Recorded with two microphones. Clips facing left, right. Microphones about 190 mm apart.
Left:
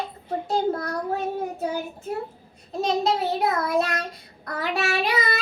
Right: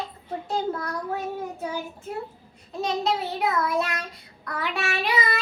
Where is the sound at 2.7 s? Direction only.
45° left (ahead or behind).